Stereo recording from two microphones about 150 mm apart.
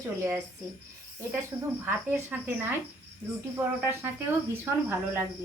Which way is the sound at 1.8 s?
15° right (ahead or behind).